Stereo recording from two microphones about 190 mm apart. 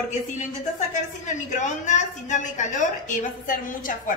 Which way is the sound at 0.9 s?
40° left (ahead or behind).